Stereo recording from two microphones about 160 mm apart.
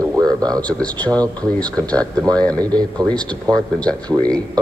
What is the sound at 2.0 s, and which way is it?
Speech, 25° right (ahead or behind).